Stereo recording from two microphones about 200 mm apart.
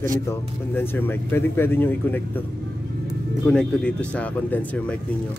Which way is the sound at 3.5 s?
5° left (ahead or behind).